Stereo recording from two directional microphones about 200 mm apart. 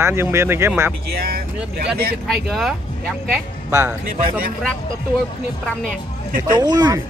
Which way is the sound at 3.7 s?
15° right (ahead or behind).